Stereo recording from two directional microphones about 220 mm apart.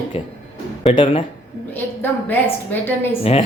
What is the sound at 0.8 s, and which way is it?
Speech, 25° left (ahead or behind).